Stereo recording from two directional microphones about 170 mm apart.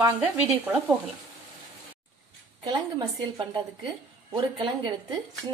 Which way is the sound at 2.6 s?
25° right (ahead or behind).